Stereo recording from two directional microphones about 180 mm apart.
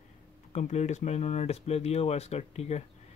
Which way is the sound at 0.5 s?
40° left (ahead or behind).